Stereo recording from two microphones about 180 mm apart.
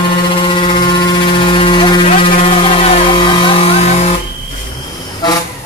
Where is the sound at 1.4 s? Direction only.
30° left (ahead or behind).